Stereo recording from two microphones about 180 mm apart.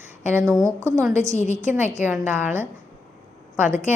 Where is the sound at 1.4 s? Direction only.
40° left (ahead or behind).